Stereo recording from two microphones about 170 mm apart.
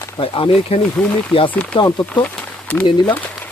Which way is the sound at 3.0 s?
5° left (ahead or behind).